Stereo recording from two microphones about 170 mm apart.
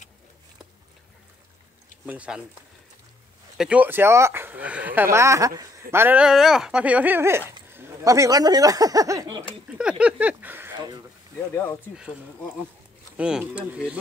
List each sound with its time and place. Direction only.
2.0 s speech: 5° right (ahead or behind)
3.5 s speech: 5° right (ahead or behind)
9.7 s speech: 5° right (ahead or behind)
11.5 s speech: 15° left (ahead or behind)
13.2 s speech: 5° right (ahead or behind)